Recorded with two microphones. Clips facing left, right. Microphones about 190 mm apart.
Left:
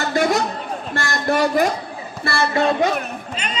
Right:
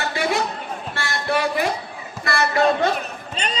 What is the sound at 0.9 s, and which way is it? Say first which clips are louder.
Speech: left 4 dB; 45° left (ahead or behind).